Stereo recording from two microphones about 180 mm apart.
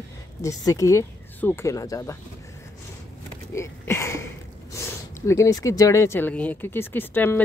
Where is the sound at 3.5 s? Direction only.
15° left (ahead or behind).